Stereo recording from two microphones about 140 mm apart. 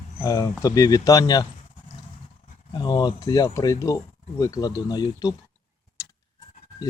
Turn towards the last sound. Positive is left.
turn(degrees=25)  # may be behind; listen again after turning